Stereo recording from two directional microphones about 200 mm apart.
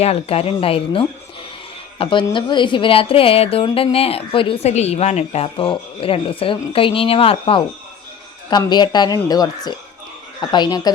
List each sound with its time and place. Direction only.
0.0 s a woman's voice: 30° left (ahead or behind)